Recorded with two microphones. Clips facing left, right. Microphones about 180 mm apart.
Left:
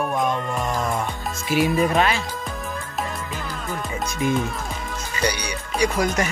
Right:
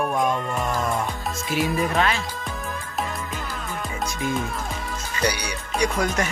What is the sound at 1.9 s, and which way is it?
Speech, 10° left (ahead or behind).